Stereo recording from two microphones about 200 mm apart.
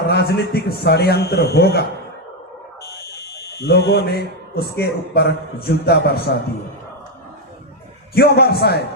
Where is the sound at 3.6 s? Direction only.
55° left (ahead or behind).